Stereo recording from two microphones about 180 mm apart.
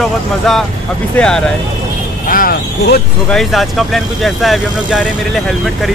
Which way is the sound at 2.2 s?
50° left (ahead or behind).